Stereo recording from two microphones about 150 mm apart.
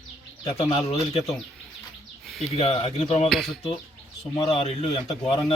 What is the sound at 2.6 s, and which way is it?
Speech, 40° left (ahead or behind).